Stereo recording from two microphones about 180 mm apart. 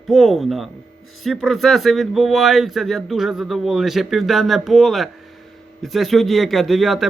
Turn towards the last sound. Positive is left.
turn(degrees=0)  # may be behind; listen again after turning